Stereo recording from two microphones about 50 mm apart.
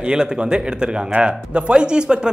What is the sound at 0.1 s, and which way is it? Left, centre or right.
Speech, centre.